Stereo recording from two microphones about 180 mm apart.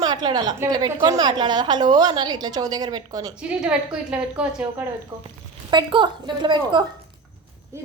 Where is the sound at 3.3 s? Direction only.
5° right (ahead or behind).